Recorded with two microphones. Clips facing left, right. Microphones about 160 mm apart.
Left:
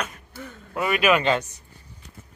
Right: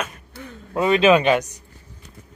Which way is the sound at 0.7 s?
25° right (ahead or behind).